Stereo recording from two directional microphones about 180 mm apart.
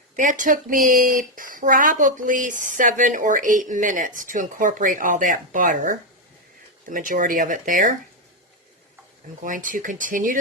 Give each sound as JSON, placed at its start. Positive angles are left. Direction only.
{"t": 0.2, "sound": "speech", "side_deg": -45}
{"t": 9.4, "sound": "speech", "side_deg": -45}